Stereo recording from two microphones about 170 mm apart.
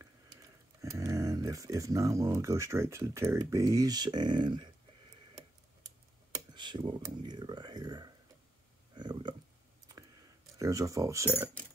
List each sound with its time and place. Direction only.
0.7 s speech: 20° right (ahead or behind)
6.5 s speech: 25° right (ahead or behind)
8.9 s a sound: 25° right (ahead or behind)
10.6 s speech: 20° right (ahead or behind)